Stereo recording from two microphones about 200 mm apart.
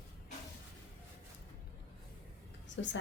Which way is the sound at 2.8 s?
65° left (ahead or behind).